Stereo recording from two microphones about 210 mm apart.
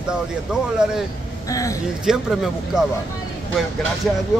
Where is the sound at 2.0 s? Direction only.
5° right (ahead or behind).